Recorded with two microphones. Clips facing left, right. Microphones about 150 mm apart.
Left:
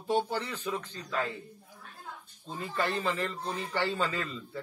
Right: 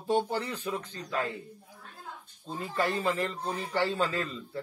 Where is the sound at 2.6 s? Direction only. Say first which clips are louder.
Right 2 dB; 5° right (ahead or behind).